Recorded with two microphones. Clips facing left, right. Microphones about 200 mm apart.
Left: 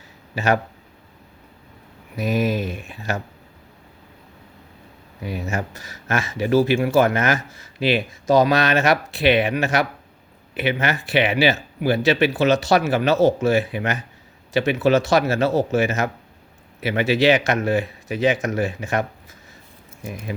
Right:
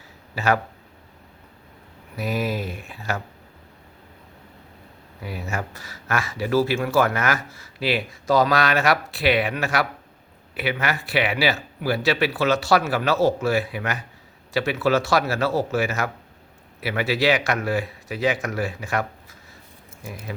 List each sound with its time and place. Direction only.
0.3 s speech: 20° left (ahead or behind)
2.1 s speech: 20° left (ahead or behind)
5.2 s speech: 20° left (ahead or behind)